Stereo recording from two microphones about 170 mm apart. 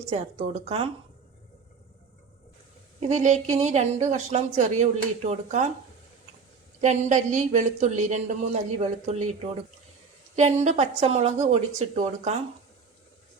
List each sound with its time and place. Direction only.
0.1 s speech: 40° right (ahead or behind)
3.0 s a woman's voice: 40° right (ahead or behind)
6.8 s a woman's voice: 45° right (ahead or behind)
10.3 s speech: 45° right (ahead or behind)